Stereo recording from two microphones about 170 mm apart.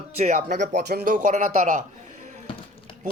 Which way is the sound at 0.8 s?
65° right (ahead or behind).